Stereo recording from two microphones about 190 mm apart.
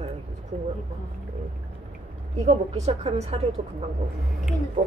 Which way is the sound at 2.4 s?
35° right (ahead or behind).